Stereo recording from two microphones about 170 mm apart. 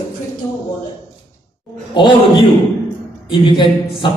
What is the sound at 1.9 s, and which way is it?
A man's voice, 30° left (ahead or behind).